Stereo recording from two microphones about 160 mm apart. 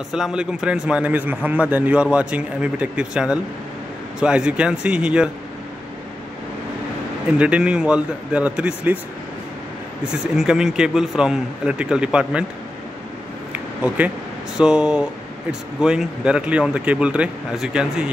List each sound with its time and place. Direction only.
0.1 s a man's voice: 5° right (ahead or behind)
7.3 s a man's voice: 5° right (ahead or behind)
10.2 s speech: 5° right (ahead or behind)
13.5 s a sound: 10° right (ahead or behind)
14.6 s speech: 5° right (ahead or behind)